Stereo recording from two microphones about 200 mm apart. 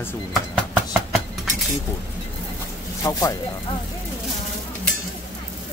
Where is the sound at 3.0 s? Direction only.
15° left (ahead or behind).